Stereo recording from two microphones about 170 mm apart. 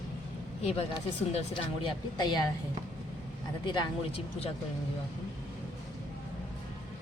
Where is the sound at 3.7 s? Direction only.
30° left (ahead or behind).